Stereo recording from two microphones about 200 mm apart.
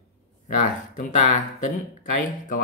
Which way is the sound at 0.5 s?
40° left (ahead or behind).